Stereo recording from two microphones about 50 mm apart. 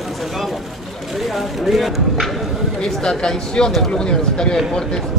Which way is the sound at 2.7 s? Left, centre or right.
Centre.